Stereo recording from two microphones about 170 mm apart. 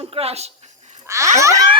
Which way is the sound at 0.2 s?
35° right (ahead or behind).